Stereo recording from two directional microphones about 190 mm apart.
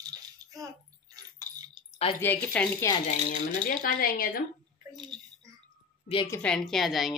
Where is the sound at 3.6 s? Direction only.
50° left (ahead or behind).